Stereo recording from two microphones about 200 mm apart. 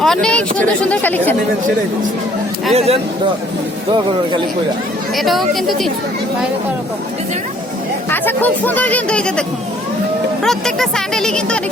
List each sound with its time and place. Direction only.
0.0 s speech: 5° left (ahead or behind)
2.7 s speech: 30° right (ahead or behind)
5.1 s speech: centre (ahead or behind)
8.1 s speech: 10° left (ahead or behind)
10.4 s speech: centre (ahead or behind)